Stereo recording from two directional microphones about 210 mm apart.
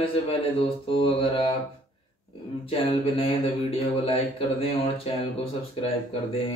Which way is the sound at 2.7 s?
25° left (ahead or behind).